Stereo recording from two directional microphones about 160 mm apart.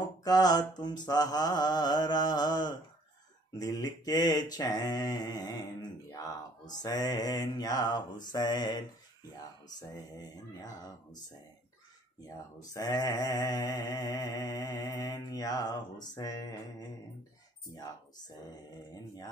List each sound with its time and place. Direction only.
0.2 s mantra: 25° left (ahead or behind)
6.8 s mantra: 25° left (ahead or behind)
12.7 s mantra: 25° left (ahead or behind)